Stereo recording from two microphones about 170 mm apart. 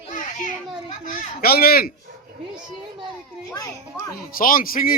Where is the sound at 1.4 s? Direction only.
65° left (ahead or behind).